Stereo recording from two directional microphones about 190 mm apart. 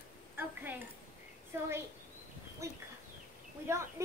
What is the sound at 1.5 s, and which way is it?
Speech, 10° right (ahead or behind).